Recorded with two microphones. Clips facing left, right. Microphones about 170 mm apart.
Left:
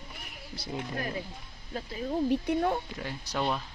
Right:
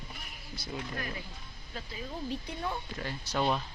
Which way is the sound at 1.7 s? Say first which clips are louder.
Left 9 dB; 45° left (ahead or behind).